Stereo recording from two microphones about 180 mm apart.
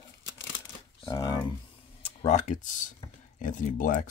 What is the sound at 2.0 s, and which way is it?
Speech, 40° left (ahead or behind).